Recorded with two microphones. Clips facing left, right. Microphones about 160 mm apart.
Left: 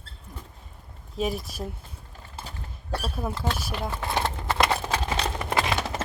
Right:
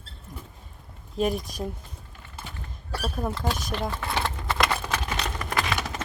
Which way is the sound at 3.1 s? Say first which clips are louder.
Right 3 dB; 5° left (ahead or behind).